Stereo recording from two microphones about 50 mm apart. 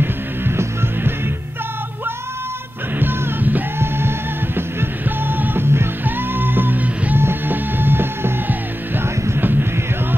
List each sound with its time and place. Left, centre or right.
0.0 s music: right
3.0 s music: right